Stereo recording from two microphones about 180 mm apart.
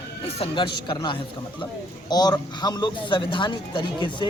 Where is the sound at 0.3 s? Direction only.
25° left (ahead or behind).